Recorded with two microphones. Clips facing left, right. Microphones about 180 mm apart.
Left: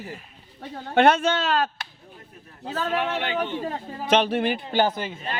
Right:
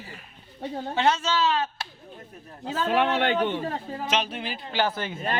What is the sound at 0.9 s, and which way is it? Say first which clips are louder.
Speech: left 6 dB; 60° left (ahead or behind).